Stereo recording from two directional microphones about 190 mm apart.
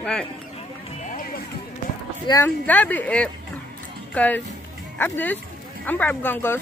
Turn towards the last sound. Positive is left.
turn(degrees=10)  # may be behind; listen again after turning